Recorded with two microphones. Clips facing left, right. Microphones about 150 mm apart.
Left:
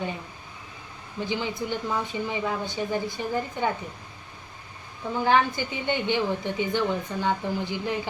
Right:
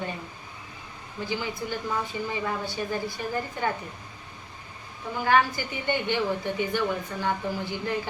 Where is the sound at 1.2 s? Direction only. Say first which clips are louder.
Left 2 dB; 20° left (ahead or behind).